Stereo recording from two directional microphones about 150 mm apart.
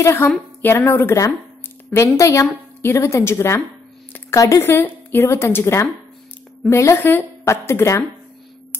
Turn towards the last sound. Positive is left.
turn(degrees=20)  # may be behind; listen again after turning